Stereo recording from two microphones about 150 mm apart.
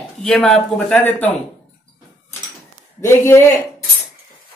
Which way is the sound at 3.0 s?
15° left (ahead or behind).